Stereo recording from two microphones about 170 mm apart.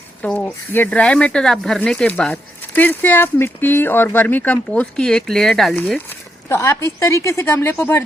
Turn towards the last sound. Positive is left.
turn(degrees=10)  # may be behind; listen again after turning